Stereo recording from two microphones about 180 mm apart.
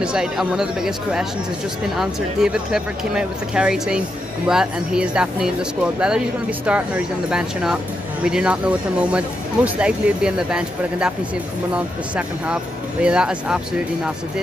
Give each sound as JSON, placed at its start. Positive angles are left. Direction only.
{"t": 0.0, "sound": "speech", "side_deg": -5}